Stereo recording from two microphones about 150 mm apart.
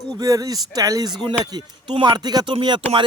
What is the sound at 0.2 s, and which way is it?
A man's voice, 25° right (ahead or behind).